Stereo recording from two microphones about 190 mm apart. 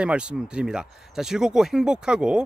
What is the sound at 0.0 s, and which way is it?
Speech, 5° right (ahead or behind).